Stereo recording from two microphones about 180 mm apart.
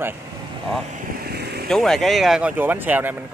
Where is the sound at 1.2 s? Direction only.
60° right (ahead or behind).